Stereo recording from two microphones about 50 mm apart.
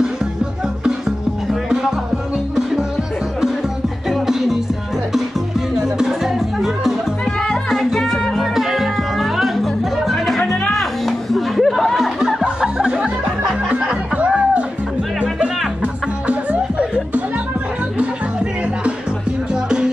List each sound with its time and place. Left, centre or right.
1.5 s music: centre
4.1 s music: centre
5.8 s music: centre
10.4 s music: centre
10.7 s music: centre
12.4 s music: centre
14.1 s music: right
19.5 s music: centre